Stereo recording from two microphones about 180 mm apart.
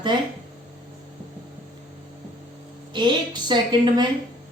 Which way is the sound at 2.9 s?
25° right (ahead or behind).